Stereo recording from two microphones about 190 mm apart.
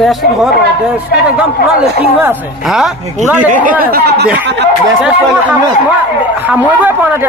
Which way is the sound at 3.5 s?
45° right (ahead or behind).